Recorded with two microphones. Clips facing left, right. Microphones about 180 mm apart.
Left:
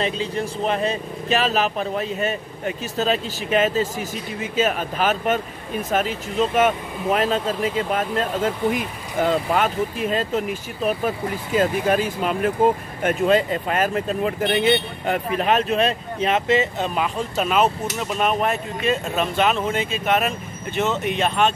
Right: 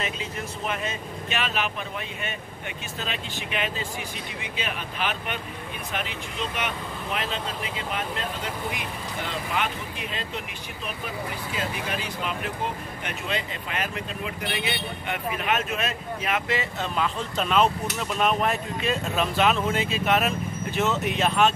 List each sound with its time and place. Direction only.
0.0 s speech: 35° left (ahead or behind); by 21.5 s centre (ahead or behind)